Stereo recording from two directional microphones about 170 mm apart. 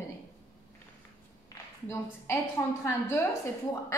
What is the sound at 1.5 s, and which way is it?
A woman's voice, 15° left (ahead or behind).